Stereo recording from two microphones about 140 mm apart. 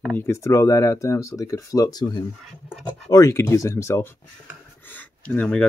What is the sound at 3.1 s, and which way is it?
Speech, 25° left (ahead or behind).